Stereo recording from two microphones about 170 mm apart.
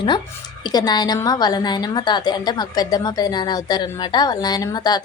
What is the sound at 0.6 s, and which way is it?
A woman's voice, 25° left (ahead or behind).